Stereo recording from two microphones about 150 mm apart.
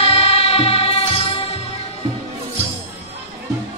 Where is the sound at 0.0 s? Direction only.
40° left (ahead or behind).